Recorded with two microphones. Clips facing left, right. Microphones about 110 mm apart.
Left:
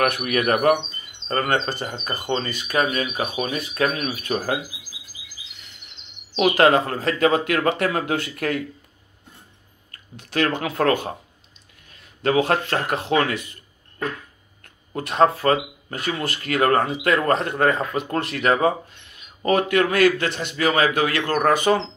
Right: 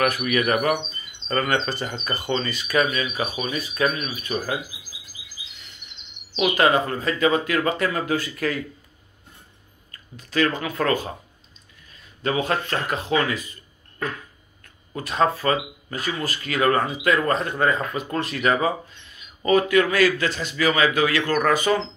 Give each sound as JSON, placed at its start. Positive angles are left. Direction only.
{"t": 0.2, "sound": "speech", "side_deg": 45}
{"t": 4.1, "sound": "speech", "side_deg": 70}
{"t": 6.5, "sound": "speech", "side_deg": 70}
{"t": 10.1, "sound": "speech", "side_deg": 70}
{"t": 15.0, "sound": "speech", "side_deg": 60}